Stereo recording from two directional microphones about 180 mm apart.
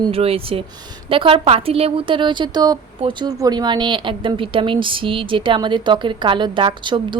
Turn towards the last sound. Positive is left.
turn(degrees=-25)  # may be behind; listen again after turning